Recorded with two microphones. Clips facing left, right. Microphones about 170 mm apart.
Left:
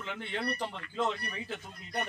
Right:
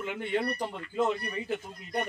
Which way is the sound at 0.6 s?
10° right (ahead or behind).